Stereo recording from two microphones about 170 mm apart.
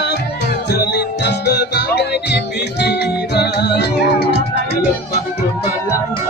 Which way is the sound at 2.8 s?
80° left.